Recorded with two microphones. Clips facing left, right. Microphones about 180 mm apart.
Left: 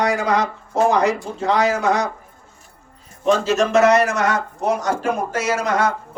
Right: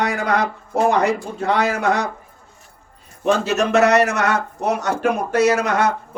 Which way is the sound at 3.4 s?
65° right (ahead or behind).